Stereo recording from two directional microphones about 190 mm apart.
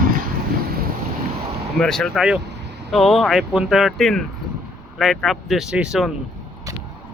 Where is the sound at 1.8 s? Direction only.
Centre (ahead or behind).